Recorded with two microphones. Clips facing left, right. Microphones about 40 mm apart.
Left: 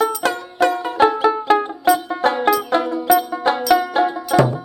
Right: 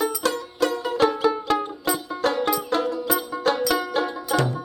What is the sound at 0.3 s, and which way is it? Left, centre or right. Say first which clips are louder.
Music: left 5 dB; left.